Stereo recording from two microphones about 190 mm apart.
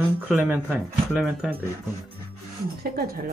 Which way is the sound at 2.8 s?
50° right (ahead or behind).